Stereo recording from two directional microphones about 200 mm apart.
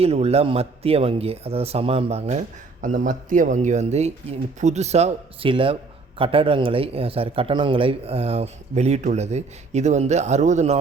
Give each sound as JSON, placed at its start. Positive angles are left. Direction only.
{"t": 0.0, "sound": "a man's voice", "side_deg": -30}